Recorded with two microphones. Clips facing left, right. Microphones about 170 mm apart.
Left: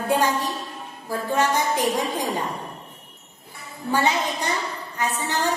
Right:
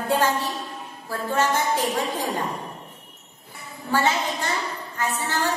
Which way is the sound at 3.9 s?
15° left (ahead or behind).